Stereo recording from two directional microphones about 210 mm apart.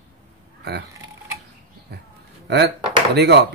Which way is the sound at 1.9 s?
50° right (ahead or behind).